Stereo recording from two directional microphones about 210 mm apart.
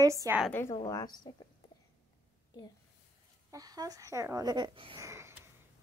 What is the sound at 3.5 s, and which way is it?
Speech, 15° right (ahead or behind).